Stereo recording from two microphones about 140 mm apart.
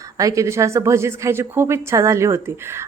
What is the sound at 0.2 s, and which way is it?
A woman's voice, 25° right (ahead or behind).